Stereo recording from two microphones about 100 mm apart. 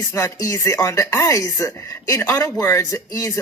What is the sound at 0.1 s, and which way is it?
Speech, 30° left (ahead or behind).